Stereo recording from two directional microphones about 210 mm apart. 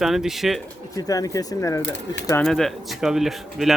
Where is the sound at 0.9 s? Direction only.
15° left (ahead or behind).